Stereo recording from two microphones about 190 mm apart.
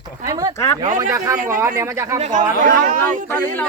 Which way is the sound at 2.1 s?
45° right (ahead or behind).